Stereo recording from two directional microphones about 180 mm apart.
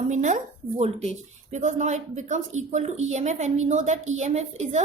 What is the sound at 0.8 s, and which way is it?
A woman's voice, 40° right (ahead or behind).